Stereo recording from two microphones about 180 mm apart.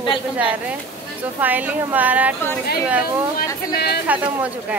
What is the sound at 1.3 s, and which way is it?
A woman's voice, 10° right (ahead or behind).